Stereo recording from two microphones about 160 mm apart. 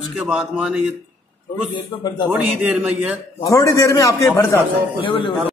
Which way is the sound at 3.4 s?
20° left (ahead or behind).